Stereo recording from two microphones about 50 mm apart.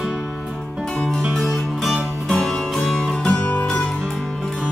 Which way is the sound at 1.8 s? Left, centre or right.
Centre.